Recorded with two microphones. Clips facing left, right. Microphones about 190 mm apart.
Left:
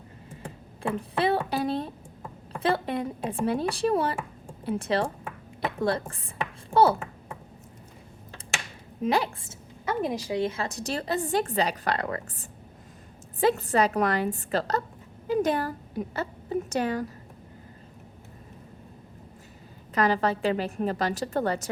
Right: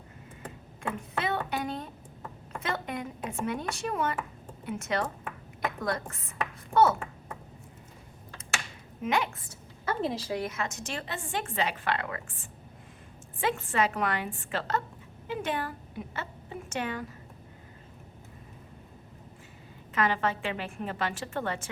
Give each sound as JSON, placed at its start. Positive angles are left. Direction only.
{"t": 0.4, "sound": "a woman's voice", "side_deg": 30}
{"t": 9.0, "sound": "a woman's voice", "side_deg": 35}
{"t": 10.0, "sound": "a woman's voice", "side_deg": 15}
{"t": 10.4, "sound": "a woman's voice", "side_deg": 30}
{"t": 19.9, "sound": "a woman's voice", "side_deg": 35}